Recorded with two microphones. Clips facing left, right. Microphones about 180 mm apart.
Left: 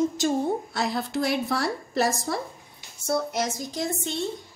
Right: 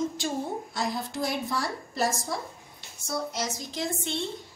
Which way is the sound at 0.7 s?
70° left (ahead or behind).